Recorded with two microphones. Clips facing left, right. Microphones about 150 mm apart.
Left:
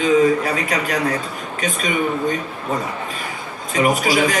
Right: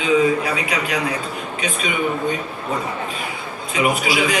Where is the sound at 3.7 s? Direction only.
40° left (ahead or behind).